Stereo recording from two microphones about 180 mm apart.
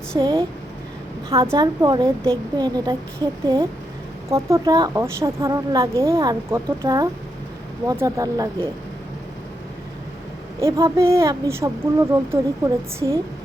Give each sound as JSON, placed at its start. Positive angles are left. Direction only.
{"t": 0.2, "sound": "a woman's voice", "side_deg": -20}
{"t": 1.5, "sound": "a woman's voice", "side_deg": -20}
{"t": 10.6, "sound": "a woman's voice", "side_deg": -15}